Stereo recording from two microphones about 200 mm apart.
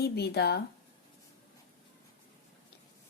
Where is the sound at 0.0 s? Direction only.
55° left (ahead or behind).